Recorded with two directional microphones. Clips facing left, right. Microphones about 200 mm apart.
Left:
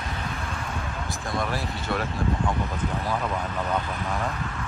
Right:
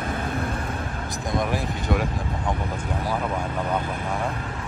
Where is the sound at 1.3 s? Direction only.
15° right (ahead or behind).